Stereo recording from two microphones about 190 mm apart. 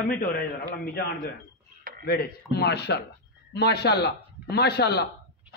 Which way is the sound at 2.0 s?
55° left (ahead or behind).